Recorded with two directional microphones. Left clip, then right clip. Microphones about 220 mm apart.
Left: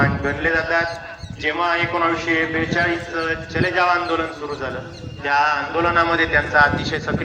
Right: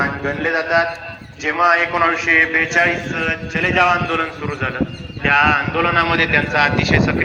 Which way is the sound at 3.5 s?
5° right (ahead or behind).